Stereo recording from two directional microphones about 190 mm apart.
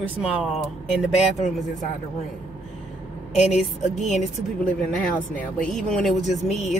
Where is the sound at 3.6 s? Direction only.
Centre (ahead or behind).